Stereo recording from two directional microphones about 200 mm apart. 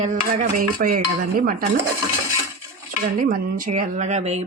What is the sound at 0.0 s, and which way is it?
Dishes, 35° right (ahead or behind).